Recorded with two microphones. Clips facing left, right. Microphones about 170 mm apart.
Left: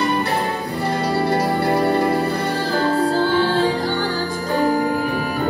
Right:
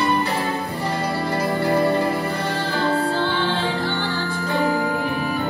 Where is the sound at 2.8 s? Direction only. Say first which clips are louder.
Left 3 dB; 40° left (ahead or behind).